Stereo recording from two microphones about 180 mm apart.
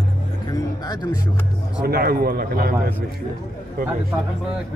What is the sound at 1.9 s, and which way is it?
Speech, 60° right (ahead or behind).